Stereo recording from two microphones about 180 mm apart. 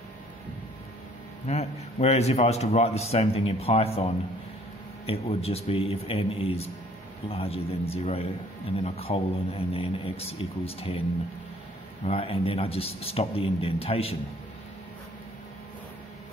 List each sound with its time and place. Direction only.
1.5 s a man's voice: 35° left (ahead or behind)
12.0 s a man's voice: 35° left (ahead or behind)